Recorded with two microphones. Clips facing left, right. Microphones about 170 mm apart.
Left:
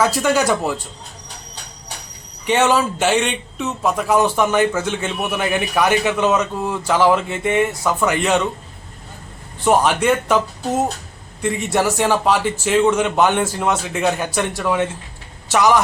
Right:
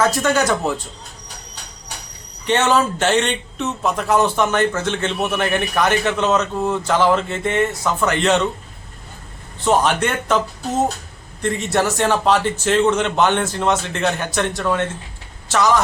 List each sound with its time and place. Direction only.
0.0 s a man's voice: 10° left (ahead or behind)
2.5 s a man's voice: 10° left (ahead or behind)
9.6 s a man's voice: 10° left (ahead or behind)
11.4 s a man's voice: 10° left (ahead or behind)